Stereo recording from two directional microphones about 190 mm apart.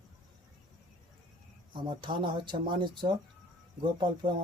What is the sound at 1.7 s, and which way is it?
Speech, 25° right (ahead or behind).